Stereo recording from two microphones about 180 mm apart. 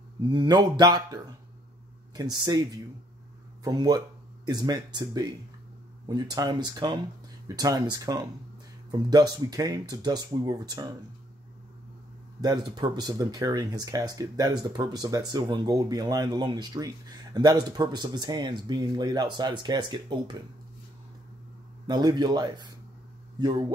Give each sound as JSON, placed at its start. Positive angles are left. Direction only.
{"t": 0.3, "sound": "speech", "side_deg": -25}
{"t": 12.4, "sound": "speech", "side_deg": -20}
{"t": 21.8, "sound": "speech", "side_deg": -25}